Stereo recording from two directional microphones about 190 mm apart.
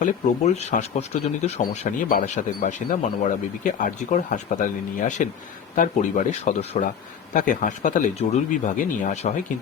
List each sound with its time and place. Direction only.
0.0 s speech: 35° left (ahead or behind)